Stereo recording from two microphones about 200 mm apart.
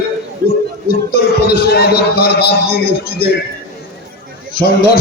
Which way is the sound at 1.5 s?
55° left (ahead or behind).